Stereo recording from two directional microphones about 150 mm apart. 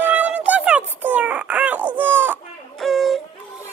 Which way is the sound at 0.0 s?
10° right (ahead or behind).